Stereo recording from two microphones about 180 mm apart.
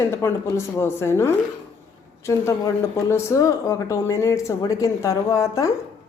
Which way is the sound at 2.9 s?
15° left (ahead or behind).